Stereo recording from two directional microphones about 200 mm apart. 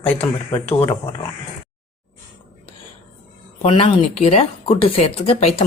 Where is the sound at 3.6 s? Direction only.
30° left (ahead or behind).